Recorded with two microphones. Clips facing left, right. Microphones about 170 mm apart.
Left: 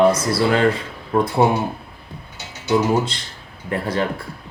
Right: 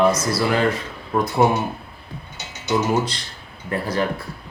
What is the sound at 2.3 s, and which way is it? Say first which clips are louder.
Mechanisms: left 3 dB; 10° left (ahead or behind).